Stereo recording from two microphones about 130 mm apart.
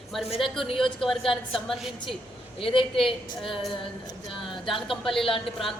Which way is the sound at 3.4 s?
Centre (ahead or behind).